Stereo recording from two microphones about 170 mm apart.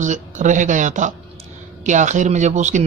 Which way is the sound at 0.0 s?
45° right (ahead or behind).